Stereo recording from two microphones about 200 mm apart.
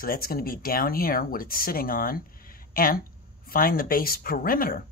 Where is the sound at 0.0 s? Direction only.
50° left (ahead or behind).